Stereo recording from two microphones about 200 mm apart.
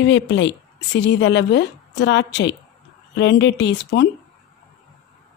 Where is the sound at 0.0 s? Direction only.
60° left (ahead or behind).